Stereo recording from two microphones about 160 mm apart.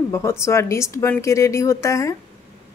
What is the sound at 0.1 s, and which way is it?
A woman's voice, 15° left (ahead or behind).